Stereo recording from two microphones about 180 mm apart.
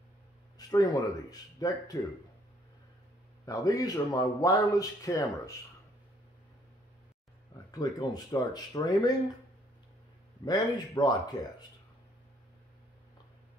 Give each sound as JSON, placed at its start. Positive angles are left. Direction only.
{"t": 0.6, "sound": "a man's voice", "side_deg": 20}
{"t": 3.4, "sound": "a man's voice", "side_deg": 20}
{"t": 7.8, "sound": "a man's voice", "side_deg": 20}
{"t": 10.4, "sound": "a man's voice", "side_deg": 20}